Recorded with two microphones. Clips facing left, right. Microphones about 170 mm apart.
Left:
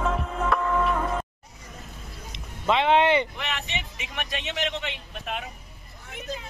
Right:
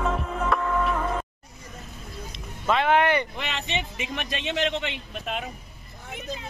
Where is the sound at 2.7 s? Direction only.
25° left (ahead or behind).